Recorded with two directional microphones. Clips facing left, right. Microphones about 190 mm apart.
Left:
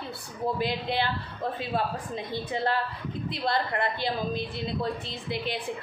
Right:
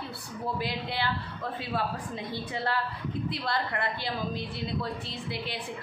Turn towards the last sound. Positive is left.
turn(degrees=20)  # may be behind; listen again after turning